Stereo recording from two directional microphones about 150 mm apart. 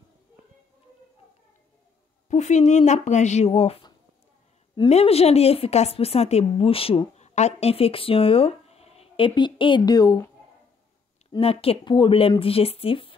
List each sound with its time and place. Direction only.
2.2 s speech: 50° left (ahead or behind)
4.8 s speech: 45° left (ahead or behind); by 10.3 s 25° left (ahead or behind)
11.3 s speech: 40° left (ahead or behind)